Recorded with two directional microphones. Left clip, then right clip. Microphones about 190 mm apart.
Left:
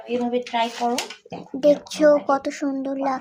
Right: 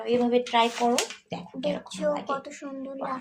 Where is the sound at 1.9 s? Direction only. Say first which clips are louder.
Left 11 dB; 35° left (ahead or behind).